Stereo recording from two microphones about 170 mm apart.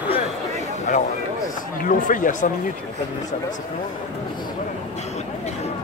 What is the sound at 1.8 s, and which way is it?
Speech, 50° left (ahead or behind).